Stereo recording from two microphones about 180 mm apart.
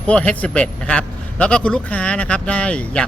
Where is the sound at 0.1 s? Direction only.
5° left (ahead or behind).